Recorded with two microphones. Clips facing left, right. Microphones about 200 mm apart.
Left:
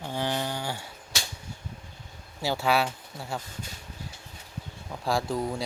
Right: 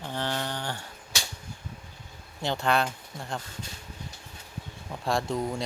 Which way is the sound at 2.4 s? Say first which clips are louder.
Left 1 dB; 5° left (ahead or behind).